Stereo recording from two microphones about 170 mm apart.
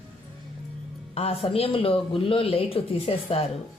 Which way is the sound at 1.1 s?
35° left (ahead or behind).